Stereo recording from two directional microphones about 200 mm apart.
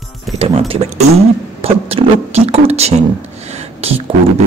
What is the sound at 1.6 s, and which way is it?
Speech, 30° right (ahead or behind).